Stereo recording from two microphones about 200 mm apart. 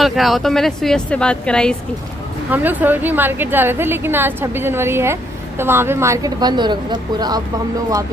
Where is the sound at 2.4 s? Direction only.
10° right (ahead or behind).